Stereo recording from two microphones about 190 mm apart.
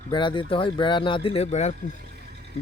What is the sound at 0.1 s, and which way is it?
Speech, 25° left (ahead or behind).